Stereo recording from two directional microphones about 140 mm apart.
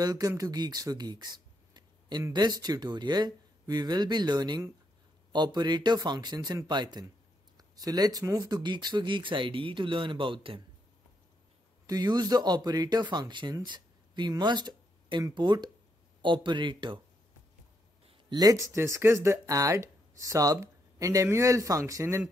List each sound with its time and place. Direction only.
0.0 s speech: 25° right (ahead or behind)
11.8 s speech: 25° right (ahead or behind)
18.3 s speech: 25° right (ahead or behind)